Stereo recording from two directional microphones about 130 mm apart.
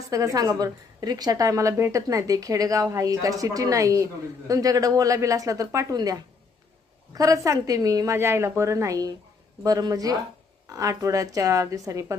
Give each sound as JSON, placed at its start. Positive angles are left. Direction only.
{"t": 0.1, "sound": "a woman's voice", "side_deg": -25}